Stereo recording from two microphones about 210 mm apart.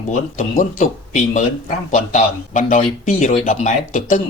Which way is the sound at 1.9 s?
40° left (ahead or behind).